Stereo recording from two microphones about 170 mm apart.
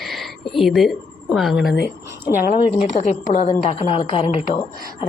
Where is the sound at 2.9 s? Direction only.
45° left (ahead or behind).